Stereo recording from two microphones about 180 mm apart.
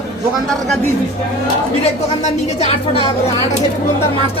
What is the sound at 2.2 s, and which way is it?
Speech, 35° left (ahead or behind).